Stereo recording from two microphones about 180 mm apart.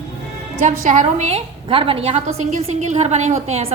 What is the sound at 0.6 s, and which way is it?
A woman's voice, 45° right (ahead or behind).